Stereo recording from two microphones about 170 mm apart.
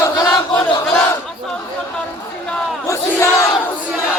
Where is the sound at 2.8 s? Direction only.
15° left (ahead or behind).